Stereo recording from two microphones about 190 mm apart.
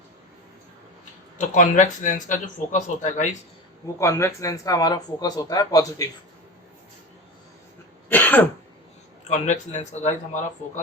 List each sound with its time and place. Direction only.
1.4 s speech: 40° left (ahead or behind)
3.9 s speech: 15° left (ahead or behind)
8.1 s throat clearing: 10° left (ahead or behind)
9.2 s speech: 35° left (ahead or behind)